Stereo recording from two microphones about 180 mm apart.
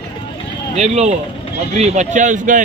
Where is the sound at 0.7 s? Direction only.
40° right (ahead or behind).